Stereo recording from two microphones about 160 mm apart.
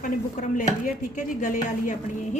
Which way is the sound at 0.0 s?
50° left (ahead or behind).